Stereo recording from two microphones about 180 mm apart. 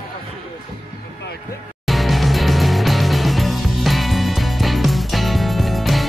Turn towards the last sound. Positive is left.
turn(degrees=0)  # may be behind; listen again after turning